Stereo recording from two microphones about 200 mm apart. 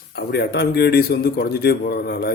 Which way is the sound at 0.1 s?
55° left (ahead or behind).